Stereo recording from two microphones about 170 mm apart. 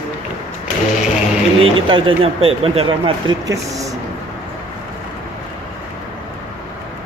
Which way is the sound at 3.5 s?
20° right (ahead or behind).